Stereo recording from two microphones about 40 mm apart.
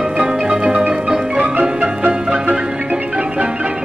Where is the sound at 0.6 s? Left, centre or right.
Right.